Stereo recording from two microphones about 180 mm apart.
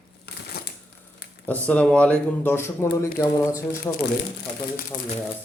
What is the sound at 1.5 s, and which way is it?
Speech, 10° left (ahead or behind).